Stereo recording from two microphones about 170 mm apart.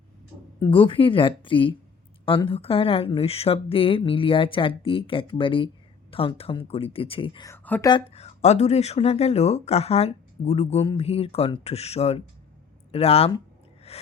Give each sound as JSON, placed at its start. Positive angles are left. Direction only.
{"t": 0.6, "sound": "speech", "side_deg": 30}
{"t": 7.4, "sound": "speech", "side_deg": 10}
{"t": 7.9, "sound": "speech", "side_deg": 35}
{"t": 13.9, "sound": "gasp", "side_deg": 35}